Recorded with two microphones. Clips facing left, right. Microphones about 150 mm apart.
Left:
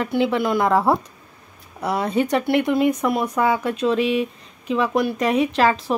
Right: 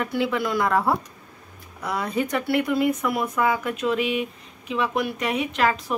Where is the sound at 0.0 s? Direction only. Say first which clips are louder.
Left 4 dB; 30° left (ahead or behind).